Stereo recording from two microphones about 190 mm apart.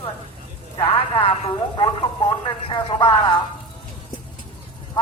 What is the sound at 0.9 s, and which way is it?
A woman's voice, 25° left (ahead or behind).